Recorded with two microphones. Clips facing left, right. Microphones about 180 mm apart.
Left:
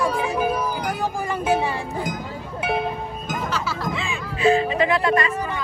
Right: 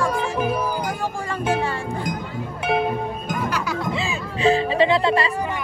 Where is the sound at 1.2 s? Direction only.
10° left (ahead or behind).